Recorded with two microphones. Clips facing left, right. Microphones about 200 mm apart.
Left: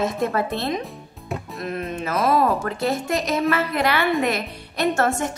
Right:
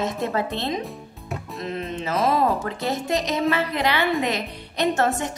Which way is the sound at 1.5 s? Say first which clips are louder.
Even; 20° right (ahead or behind).